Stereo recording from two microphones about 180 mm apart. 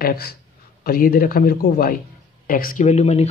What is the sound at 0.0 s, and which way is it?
A man's voice, 60° left (ahead or behind).